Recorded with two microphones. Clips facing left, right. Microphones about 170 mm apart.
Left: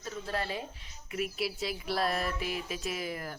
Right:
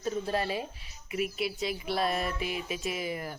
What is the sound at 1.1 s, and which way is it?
Speech, centre (ahead or behind).